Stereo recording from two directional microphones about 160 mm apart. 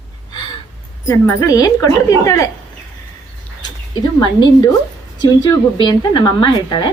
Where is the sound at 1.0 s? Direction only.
20° left (ahead or behind).